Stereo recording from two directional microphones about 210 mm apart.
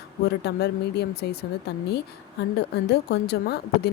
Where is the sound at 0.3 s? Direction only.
50° left (ahead or behind).